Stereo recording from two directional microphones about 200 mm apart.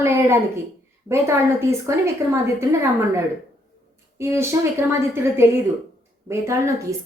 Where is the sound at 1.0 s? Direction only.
15° right (ahead or behind).